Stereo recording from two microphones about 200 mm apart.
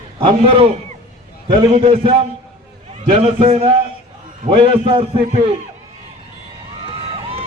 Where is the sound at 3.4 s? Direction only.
30° right (ahead or behind).